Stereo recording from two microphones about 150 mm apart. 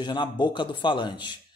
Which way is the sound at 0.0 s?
30° left (ahead or behind).